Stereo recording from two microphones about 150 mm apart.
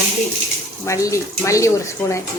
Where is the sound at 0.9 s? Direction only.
20° left (ahead or behind).